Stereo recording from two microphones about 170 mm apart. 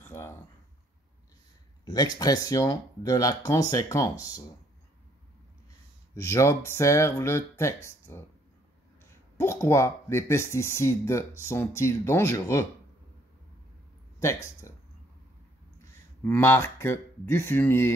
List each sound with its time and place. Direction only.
0.0 s a sound: 15° left (ahead or behind)
1.9 s speech: 20° left (ahead or behind)
6.1 s speech: 15° left (ahead or behind)
9.4 s speech: 15° left (ahead or behind)
14.2 s speech: 15° left (ahead or behind)
16.3 s speech: 15° left (ahead or behind)